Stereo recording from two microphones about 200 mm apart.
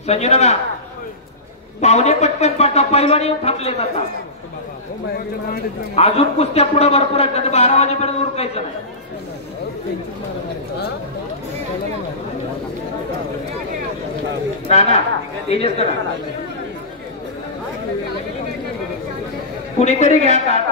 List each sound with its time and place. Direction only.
0.0 s a man's voice: 35° left (ahead or behind)
1.8 s a man's voice: 35° left (ahead or behind)
5.9 s a man's voice: 30° left (ahead or behind)
14.7 s a man's voice: 30° left (ahead or behind)
19.8 s a man's voice: 35° left (ahead or behind)